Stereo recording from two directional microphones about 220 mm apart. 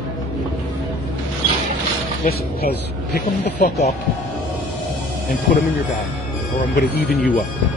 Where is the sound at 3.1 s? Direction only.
35° left (ahead or behind).